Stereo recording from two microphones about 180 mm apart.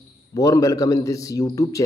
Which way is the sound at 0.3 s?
20° left (ahead or behind).